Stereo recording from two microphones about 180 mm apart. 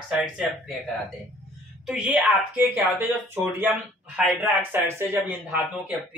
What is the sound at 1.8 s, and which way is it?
Speech, 5° right (ahead or behind).